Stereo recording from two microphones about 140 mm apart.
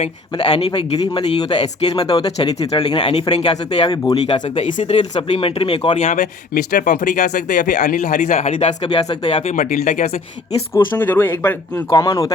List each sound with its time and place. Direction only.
0.0 s speech: 45° left (ahead or behind)
3.8 s speech: 30° left (ahead or behind)
4.3 s speech: 50° left (ahead or behind)
6.1 s speech: 75° left (ahead or behind)
8.9 s speech: 45° left (ahead or behind); by 10.1 s 85° left
10.9 s speech: 15° left (ahead or behind)
11.7 s speech: 30° left (ahead or behind)